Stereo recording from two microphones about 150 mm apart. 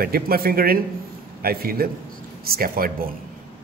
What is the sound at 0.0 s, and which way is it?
Speech, 80° right.